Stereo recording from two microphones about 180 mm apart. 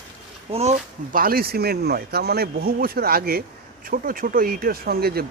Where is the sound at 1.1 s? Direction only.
50° right (ahead or behind).